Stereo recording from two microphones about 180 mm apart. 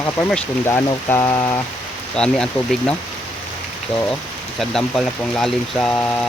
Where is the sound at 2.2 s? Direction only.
5° left (ahead or behind).